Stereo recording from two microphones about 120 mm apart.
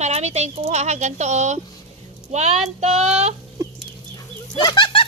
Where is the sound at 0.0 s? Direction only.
65° right (ahead or behind).